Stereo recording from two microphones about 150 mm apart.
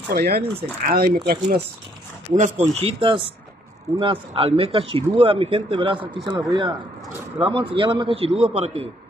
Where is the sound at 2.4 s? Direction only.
50° right (ahead or behind).